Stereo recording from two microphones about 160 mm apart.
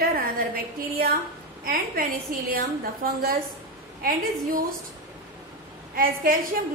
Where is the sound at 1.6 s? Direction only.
60° right (ahead or behind).